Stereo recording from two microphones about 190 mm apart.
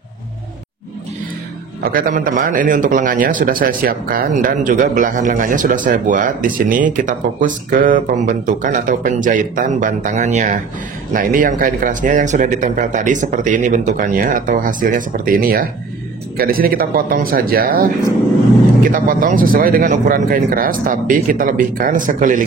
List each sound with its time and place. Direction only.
1.8 s a man's voice: 50° right (ahead or behind)